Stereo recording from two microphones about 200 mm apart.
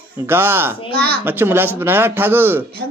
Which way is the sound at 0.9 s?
55° right (ahead or behind).